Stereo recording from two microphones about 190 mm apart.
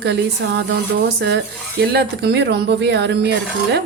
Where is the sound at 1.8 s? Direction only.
60° right (ahead or behind).